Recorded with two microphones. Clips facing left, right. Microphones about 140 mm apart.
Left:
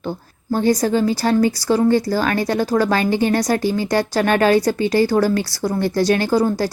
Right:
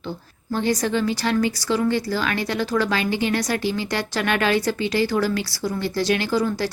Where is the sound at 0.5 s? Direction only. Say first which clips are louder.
Left 5 dB; 40° left (ahead or behind).